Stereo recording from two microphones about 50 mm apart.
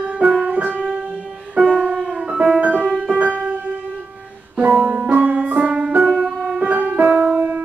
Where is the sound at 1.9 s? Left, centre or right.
Centre.